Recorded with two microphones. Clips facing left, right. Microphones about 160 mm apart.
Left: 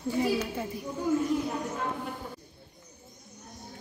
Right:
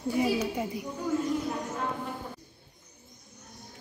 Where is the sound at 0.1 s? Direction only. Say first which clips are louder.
Right 1 dB; 15° right (ahead or behind).